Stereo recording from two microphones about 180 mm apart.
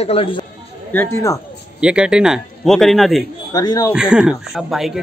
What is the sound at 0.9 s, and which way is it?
Speech, 20° left (ahead or behind).